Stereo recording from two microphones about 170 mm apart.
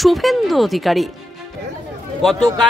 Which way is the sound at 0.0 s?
Centre (ahead or behind).